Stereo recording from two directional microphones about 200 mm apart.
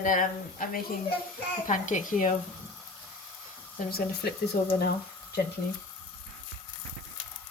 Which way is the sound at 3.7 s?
45° left (ahead or behind).